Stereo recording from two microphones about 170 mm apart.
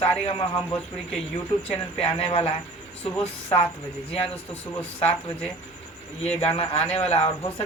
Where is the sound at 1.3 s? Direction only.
35° left (ahead or behind).